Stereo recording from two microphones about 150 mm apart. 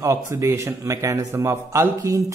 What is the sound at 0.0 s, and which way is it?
A man's voice, 20° right (ahead or behind).